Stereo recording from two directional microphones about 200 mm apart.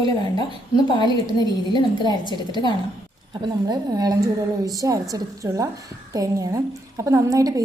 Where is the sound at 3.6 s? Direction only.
20° right (ahead or behind).